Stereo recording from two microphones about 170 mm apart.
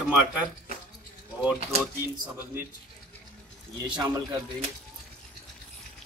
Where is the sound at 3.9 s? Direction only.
25° right (ahead or behind).